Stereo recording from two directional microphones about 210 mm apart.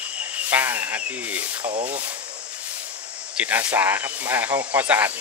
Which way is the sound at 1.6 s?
30° right (ahead or behind).